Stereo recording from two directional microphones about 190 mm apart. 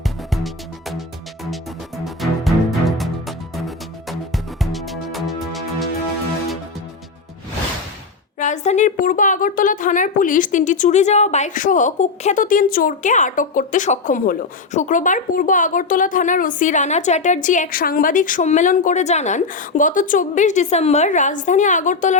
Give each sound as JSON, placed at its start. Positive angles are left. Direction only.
{"t": 0.3, "sound": "music", "side_deg": 0}
{"t": 2.0, "sound": "music", "side_deg": 0}
{"t": 4.6, "sound": "music", "side_deg": 0}
{"t": 8.4, "sound": "a woman's voice", "side_deg": 40}